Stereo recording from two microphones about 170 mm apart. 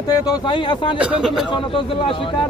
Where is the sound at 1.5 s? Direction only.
30° left (ahead or behind).